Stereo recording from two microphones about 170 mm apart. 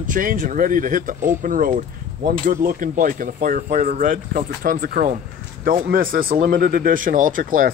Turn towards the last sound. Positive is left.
turn(degrees=-55)  # may be behind; listen again after turning